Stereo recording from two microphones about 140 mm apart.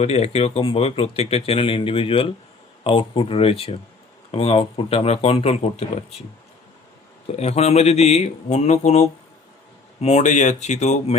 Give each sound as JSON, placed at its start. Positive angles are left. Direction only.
{"t": 0.0, "sound": "speech", "side_deg": 45}
{"t": 7.3, "sound": "speech", "side_deg": 50}